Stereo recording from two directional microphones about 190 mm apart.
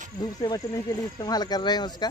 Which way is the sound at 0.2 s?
20° left (ahead or behind).